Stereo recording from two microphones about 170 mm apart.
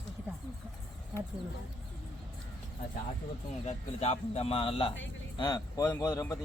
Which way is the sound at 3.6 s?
40° left (ahead or behind).